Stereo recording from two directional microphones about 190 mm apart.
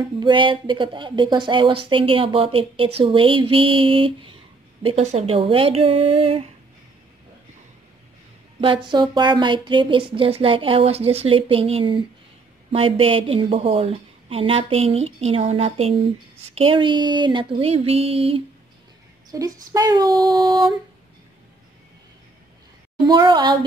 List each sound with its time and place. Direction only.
0.2 s a woman's voice: 25° right (ahead or behind)
8.5 s a woman's voice: 25° right (ahead or behind)
19.3 s a woman's voice: 20° right (ahead or behind)
23.0 s a woman's voice: 25° right (ahead or behind)